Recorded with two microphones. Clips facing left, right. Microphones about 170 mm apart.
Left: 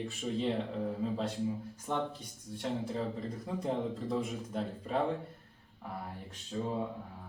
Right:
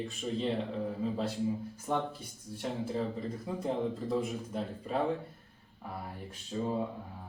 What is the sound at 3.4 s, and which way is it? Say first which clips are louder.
Speech: right 1 dB; centre (ahead or behind).